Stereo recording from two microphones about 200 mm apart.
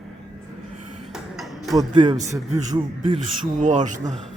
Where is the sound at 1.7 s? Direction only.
20° right (ahead or behind).